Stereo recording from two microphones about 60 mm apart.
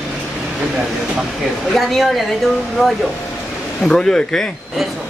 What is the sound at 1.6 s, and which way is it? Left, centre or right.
Speech, centre.